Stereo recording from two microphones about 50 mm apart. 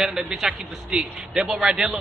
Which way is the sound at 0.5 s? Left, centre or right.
Centre.